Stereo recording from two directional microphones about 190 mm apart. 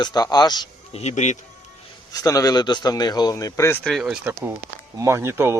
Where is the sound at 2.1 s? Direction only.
20° left (ahead or behind).